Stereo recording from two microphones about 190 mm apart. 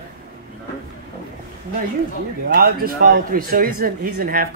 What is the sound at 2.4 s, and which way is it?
A man's voice, 55° right (ahead or behind).